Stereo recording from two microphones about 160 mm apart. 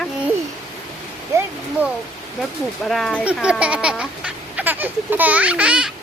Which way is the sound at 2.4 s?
Centre (ahead or behind).